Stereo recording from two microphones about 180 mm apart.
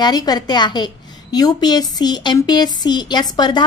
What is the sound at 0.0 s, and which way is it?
A woman's voice, 20° left (ahead or behind).